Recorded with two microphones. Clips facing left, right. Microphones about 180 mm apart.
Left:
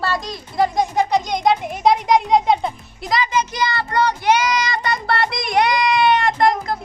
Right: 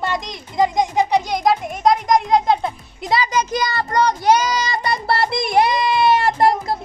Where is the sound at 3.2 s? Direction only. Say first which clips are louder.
Right 1 dB; 40° right (ahead or behind).